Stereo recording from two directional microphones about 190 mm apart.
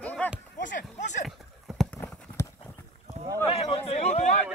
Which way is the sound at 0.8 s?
40° left (ahead or behind).